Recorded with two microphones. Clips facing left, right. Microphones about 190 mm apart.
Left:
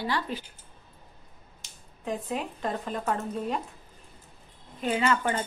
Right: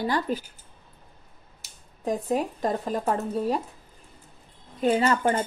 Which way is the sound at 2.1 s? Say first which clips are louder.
Right 6 dB; 40° right (ahead or behind).